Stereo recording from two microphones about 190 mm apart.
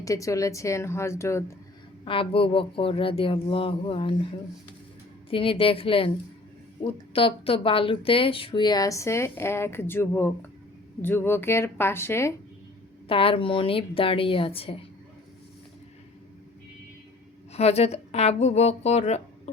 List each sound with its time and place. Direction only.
0.0 s a woman's voice: 15° left (ahead or behind)
2.0 s speech: 30° left (ahead or behind)
5.3 s a woman's voice: 30° left (ahead or behind)
13.1 s speech: 30° left (ahead or behind)
17.5 s a woman's voice: 35° left (ahead or behind)